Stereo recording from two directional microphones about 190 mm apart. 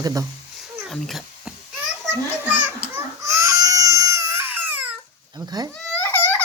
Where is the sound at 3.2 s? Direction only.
15° right (ahead or behind).